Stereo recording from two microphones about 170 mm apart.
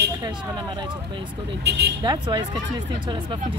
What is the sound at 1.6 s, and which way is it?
Speech, 85° right.